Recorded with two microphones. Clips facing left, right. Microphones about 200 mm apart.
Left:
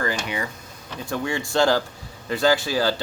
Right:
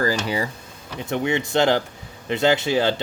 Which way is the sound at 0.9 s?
20° right (ahead or behind).